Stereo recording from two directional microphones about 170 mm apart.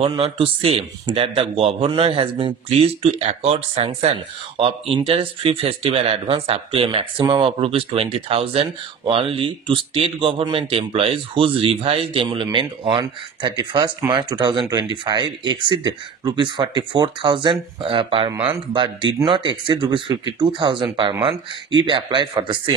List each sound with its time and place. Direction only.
0.0 s a man's voice: 30° right (ahead or behind)